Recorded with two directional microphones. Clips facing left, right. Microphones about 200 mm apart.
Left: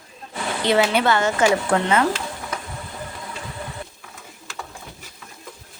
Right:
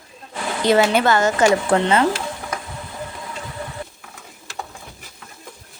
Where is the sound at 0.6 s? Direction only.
45° right (ahead or behind).